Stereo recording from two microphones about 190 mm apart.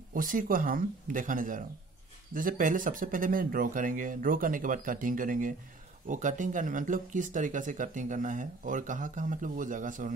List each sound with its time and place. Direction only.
0.1 s speech: 45° right (ahead or behind)